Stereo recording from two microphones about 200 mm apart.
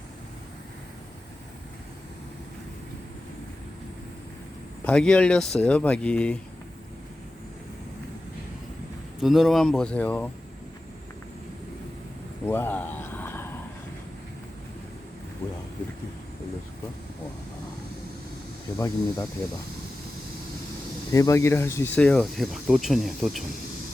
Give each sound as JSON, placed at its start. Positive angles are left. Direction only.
{"t": 4.9, "sound": "speech", "side_deg": 5}
{"t": 9.2, "sound": "speech", "side_deg": 0}
{"t": 12.5, "sound": "a sound", "side_deg": 10}
{"t": 18.8, "sound": "speech", "side_deg": 20}
{"t": 21.1, "sound": "speech", "side_deg": 15}